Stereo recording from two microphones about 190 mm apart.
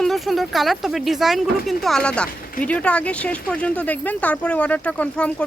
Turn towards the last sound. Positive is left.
turn(degrees=5)  # may be behind; listen again after turning